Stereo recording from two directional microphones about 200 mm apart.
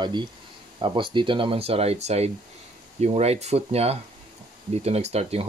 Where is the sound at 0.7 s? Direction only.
25° right (ahead or behind).